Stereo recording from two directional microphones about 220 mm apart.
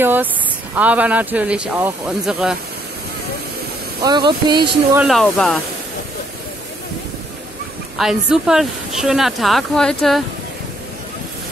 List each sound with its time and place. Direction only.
0.0 s speech: 10° right (ahead or behind)
4.0 s speech: 20° right (ahead or behind)
4.9 s speech: centre (ahead or behind)
8.0 s speech: centre (ahead or behind)